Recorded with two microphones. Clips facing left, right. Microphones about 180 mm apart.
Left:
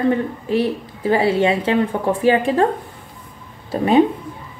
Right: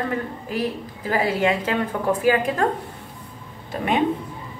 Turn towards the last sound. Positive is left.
turn(degrees=35)  # may be behind; listen again after turning